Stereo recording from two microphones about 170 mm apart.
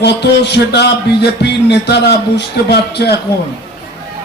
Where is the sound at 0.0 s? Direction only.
80° left.